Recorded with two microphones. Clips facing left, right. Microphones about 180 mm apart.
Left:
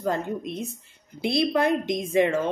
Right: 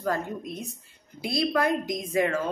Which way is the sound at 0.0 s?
25° left (ahead or behind).